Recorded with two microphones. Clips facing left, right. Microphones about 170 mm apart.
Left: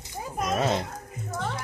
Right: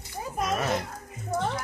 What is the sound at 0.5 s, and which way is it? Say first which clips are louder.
Speech: left 3 dB; 20° left (ahead or behind).